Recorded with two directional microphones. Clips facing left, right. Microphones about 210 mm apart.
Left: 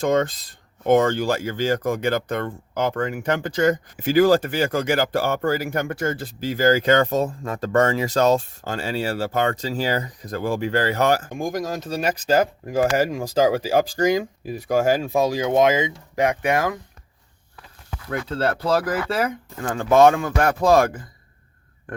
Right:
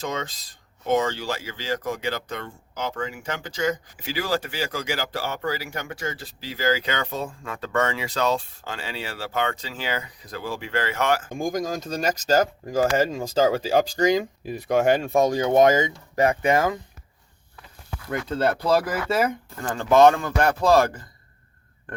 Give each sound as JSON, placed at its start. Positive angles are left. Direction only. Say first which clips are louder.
{"t": 0.0, "sound": "speech", "louder": "left 10 dB", "side_deg": 55}
{"t": 11.3, "sound": "speech", "louder": "even", "side_deg": 0}
{"t": 12.8, "sound": "speech", "louder": "left 1 dB", "side_deg": 15}
{"t": 18.1, "sound": "speech", "louder": "even", "side_deg": 0}
{"t": 19.6, "sound": "speech", "louder": "left 1 dB", "side_deg": 10}